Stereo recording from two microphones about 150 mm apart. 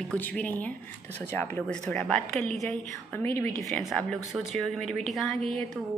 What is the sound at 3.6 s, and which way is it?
Speech, centre (ahead or behind).